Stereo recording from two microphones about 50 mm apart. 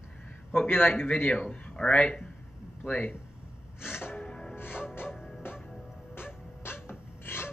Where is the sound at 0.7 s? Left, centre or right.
Left.